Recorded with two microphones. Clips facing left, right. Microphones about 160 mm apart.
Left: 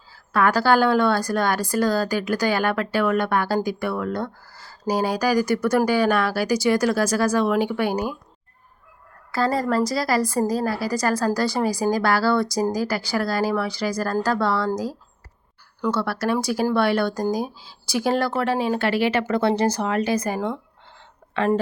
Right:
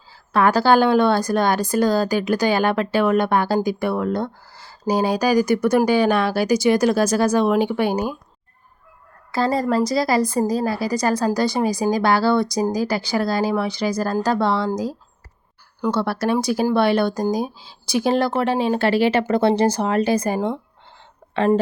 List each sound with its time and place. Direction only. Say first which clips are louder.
0.1 s a woman's voice: right 3 dB; 25° right (ahead or behind)
9.3 s a woman's voice: right 2 dB; 25° right (ahead or behind)